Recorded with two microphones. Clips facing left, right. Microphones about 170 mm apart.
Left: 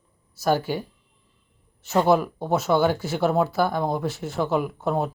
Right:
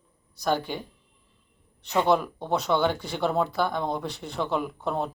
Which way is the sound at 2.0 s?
5° left (ahead or behind).